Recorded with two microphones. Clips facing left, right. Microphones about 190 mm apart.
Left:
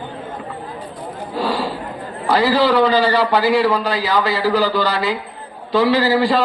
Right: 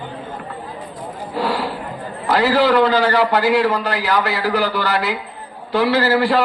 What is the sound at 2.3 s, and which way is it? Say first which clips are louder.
A man's voice: even; 15° left (ahead or behind).